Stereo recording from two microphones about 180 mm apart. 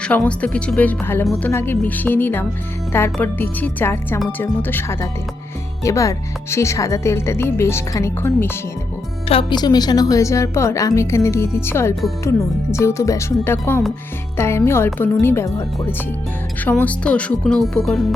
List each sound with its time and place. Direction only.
0.0 s speech: 5° left (ahead or behind)
9.3 s speech: 25° left (ahead or behind); by 18.0 s centre (ahead or behind)